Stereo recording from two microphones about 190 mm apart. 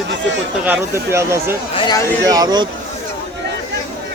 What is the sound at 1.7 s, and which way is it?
Speech, 20° left (ahead or behind).